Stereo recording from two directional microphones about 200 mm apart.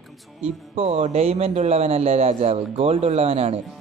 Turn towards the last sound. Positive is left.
turn(degrees=-30)  # may be behind; listen again after turning